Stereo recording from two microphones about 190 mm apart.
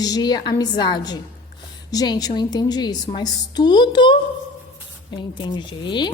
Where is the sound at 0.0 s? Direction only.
20° left (ahead or behind).